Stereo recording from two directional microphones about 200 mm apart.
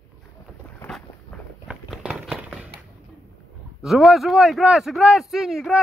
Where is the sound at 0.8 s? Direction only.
Centre (ahead or behind).